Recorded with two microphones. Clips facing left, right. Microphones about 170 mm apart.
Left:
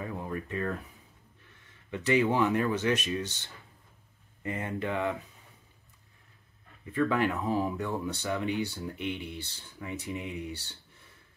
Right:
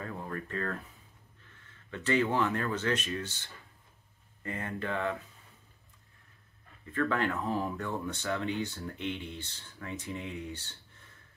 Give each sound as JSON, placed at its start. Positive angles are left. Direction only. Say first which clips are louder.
{"t": 0.0, "sound": "a sound", "louder": "left 3 dB", "side_deg": 15}
{"t": 1.9, "sound": "speech", "louder": "left 3 dB", "side_deg": 15}
{"t": 6.9, "sound": "speech", "louder": "left 3 dB", "side_deg": 15}